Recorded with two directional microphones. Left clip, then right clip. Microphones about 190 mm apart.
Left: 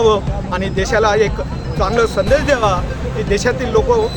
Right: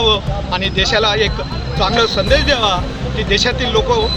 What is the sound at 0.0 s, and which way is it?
Speech, 15° left (ahead or behind).